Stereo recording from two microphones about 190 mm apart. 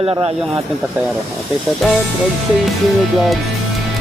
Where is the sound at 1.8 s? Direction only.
Centre (ahead or behind).